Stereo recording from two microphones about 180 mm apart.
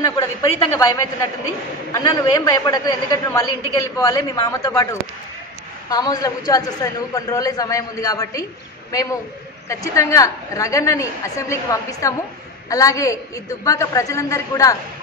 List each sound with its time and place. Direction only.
0.0 s a woman's voice: 20° left (ahead or behind)
5.9 s a woman's voice: 20° left (ahead or behind)
9.7 s a woman's voice: 15° left (ahead or behind)